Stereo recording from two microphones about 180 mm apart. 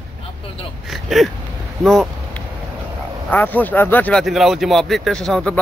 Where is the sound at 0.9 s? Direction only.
Centre (ahead or behind).